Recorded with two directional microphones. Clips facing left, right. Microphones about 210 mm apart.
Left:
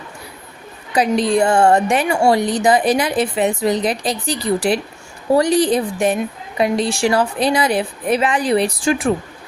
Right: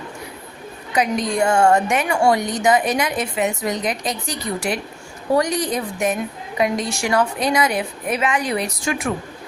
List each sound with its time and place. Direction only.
0.9 s a woman's voice: 30° left (ahead or behind)